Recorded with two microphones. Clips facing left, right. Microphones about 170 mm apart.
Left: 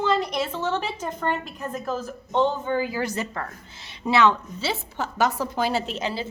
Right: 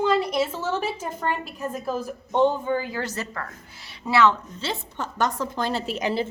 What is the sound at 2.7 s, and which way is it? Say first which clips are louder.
A woman's voice: left 2 dB; 5° left (ahead or behind).